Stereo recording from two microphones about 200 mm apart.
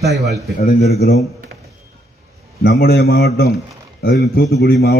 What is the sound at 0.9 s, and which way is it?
Speech, 50° left (ahead or behind).